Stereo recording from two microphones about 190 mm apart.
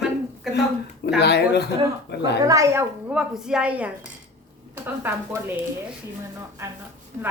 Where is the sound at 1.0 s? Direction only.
60° left (ahead or behind).